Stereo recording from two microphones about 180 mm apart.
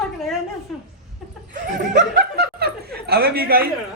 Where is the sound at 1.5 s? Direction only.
50° right (ahead or behind).